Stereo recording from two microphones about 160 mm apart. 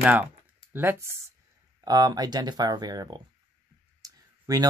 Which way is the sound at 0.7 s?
15° right (ahead or behind).